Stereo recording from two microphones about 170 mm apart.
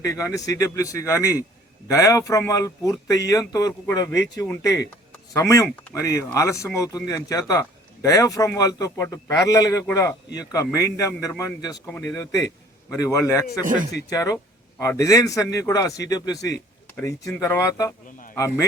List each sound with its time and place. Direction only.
0.0 s speech: 20° left (ahead or behind)